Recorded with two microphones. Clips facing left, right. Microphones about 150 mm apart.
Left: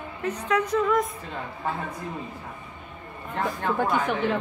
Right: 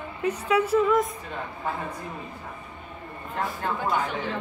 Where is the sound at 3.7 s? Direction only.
55° left (ahead or behind).